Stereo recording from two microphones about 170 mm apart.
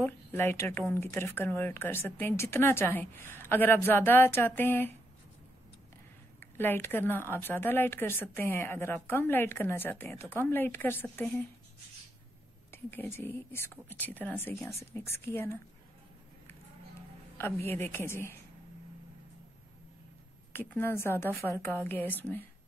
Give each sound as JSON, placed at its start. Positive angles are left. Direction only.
{"t": 0.0, "sound": "speech", "side_deg": 10}
{"t": 6.4, "sound": "speech", "side_deg": 10}
{"t": 12.7, "sound": "speech", "side_deg": 15}
{"t": 17.4, "sound": "speech", "side_deg": 15}
{"t": 20.5, "sound": "speech", "side_deg": 10}